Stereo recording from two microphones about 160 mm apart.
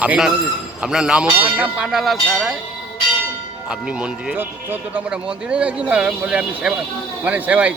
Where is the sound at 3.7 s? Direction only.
5° right (ahead or behind).